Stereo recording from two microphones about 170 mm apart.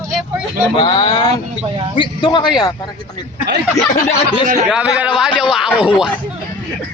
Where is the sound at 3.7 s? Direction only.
40° left (ahead or behind).